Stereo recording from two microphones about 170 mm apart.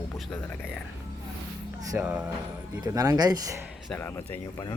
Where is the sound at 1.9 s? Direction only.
10° right (ahead or behind).